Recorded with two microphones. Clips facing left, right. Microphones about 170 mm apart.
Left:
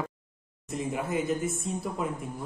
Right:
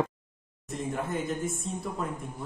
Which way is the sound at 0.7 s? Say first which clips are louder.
Left 1 dB; centre (ahead or behind).